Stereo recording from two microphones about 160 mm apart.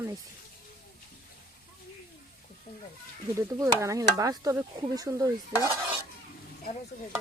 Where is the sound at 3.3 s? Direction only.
20° right (ahead or behind).